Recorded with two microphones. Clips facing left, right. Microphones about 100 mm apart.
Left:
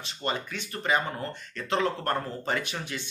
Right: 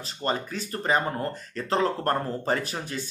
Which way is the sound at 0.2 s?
35° right (ahead or behind).